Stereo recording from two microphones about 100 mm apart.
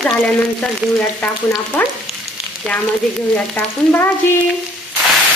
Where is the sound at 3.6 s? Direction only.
20° left (ahead or behind).